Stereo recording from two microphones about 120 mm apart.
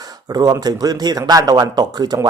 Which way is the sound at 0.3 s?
30° right (ahead or behind).